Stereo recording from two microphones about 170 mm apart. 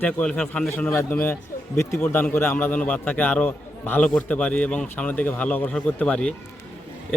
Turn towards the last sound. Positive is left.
turn(degrees=5)  # may be behind; listen again after turning